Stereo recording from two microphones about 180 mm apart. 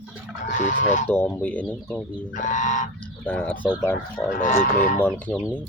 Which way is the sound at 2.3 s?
45° left (ahead or behind).